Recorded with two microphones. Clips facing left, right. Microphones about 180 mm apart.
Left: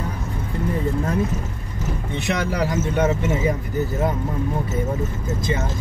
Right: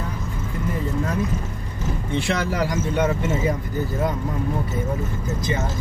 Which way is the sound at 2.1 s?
20° left (ahead or behind).